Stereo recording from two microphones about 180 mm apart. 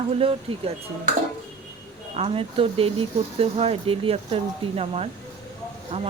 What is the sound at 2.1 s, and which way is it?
Speech, 35° right (ahead or behind).